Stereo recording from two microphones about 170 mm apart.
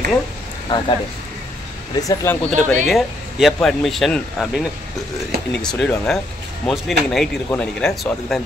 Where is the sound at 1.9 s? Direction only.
20° left (ahead or behind).